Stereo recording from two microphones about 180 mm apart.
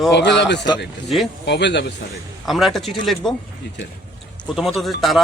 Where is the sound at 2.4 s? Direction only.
Centre (ahead or behind).